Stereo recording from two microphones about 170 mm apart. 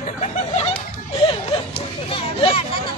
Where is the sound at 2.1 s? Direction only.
35° left (ahead or behind).